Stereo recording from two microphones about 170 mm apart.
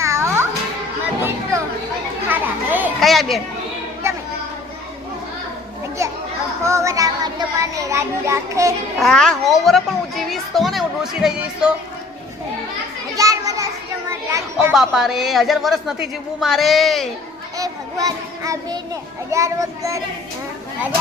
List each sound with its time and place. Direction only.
0.0 s music: 15° right (ahead or behind)
2.3 s children playing: 10° right (ahead or behind)
3.0 s speech: centre (ahead or behind)
6.6 s music: 15° right (ahead or behind)
9.0 s a child's voice: 5° left (ahead or behind)
13.1 s children playing: 20° right (ahead or behind)
14.1 s a sound: 15° right (ahead or behind)
14.7 s a child's voice: centre (ahead or behind)
17.6 s child singing: 20° right (ahead or behind)
19.3 s a child's voice: 20° right (ahead or behind)